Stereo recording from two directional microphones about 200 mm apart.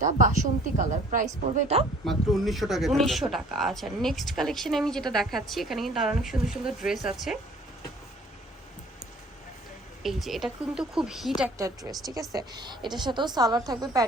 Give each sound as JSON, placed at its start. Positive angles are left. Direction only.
{"t": 0.0, "sound": "a woman's voice", "side_deg": -40}
{"t": 2.0, "sound": "speech", "side_deg": 0}
{"t": 10.0, "sound": "speech", "side_deg": 0}
{"t": 11.5, "sound": "a woman's voice", "side_deg": -15}